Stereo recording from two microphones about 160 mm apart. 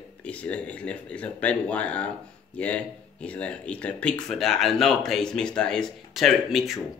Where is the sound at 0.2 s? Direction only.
10° left (ahead or behind).